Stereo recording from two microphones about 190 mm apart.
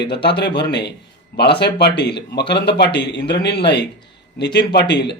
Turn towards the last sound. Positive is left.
turn(degrees=60)  # may be behind; listen again after turning